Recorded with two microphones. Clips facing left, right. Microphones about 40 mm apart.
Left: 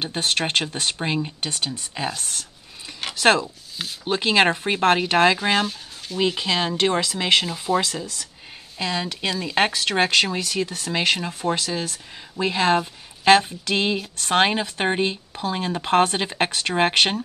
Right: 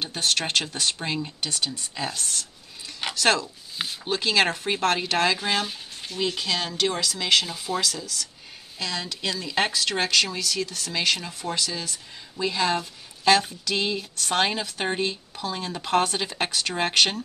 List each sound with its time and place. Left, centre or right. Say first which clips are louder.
0.0 s a woman's voice: left 2 dB; left
7.5 s speech: left 7 dB; centre
7.8 s a woman's voice: left 1 dB; left